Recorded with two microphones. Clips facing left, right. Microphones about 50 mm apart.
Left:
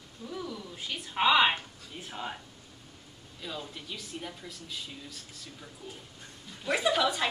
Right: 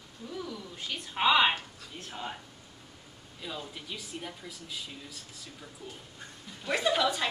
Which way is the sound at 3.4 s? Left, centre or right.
Centre.